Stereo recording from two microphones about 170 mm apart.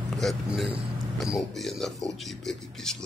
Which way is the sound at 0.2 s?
Centre (ahead or behind).